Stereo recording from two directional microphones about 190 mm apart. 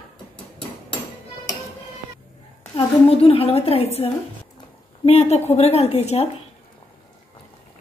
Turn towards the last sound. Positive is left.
turn(degrees=35)  # may be behind; listen again after turning